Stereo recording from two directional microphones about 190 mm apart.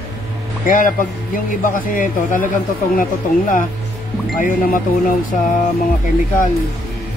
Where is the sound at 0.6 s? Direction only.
45° left (ahead or behind).